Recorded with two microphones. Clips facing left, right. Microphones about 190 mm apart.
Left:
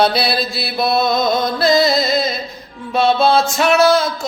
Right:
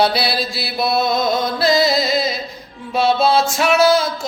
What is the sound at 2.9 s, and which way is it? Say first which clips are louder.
Music: left 2 dB; 5° right (ahead or behind).